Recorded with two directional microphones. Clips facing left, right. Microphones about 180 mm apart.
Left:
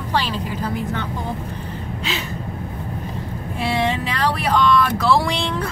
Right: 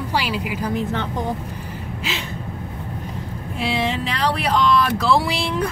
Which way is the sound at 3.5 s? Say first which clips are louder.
Left 1 dB; centre (ahead or behind).